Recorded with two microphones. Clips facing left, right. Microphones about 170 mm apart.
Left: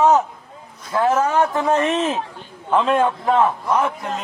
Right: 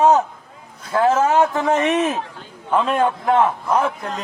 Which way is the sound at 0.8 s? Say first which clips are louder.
Right 1 dB; 30° right (ahead or behind).